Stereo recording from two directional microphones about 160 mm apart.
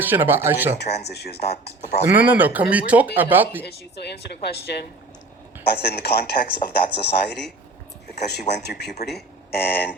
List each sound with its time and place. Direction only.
0.0 s speech: 15° right (ahead or behind)
0.8 s speech: 90° left
2.1 s speech: 10° right (ahead or behind)
3.7 s speech: 90° left